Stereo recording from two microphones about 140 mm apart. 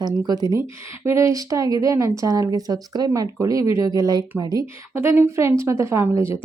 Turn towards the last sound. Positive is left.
turn(degrees=-20)  # may be behind; listen again after turning